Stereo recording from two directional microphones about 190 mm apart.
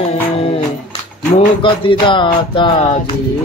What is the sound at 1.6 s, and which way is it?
Mantra, 25° left (ahead or behind).